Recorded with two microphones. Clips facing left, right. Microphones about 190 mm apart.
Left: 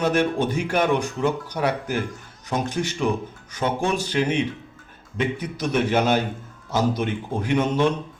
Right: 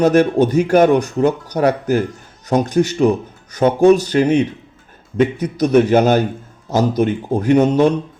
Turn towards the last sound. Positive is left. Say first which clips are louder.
# right 8 dB
turn(degrees=-40)  # may be behind; listen again after turning